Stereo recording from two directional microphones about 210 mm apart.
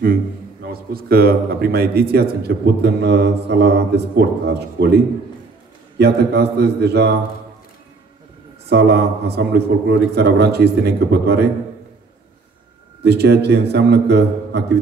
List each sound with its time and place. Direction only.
0.7 s a man's voice: 45° right (ahead or behind)
8.6 s a man's voice: 50° right (ahead or behind)
13.0 s a man's voice: 50° right (ahead or behind)